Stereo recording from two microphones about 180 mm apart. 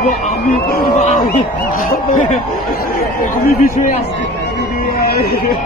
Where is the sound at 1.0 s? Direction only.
40° left (ahead or behind).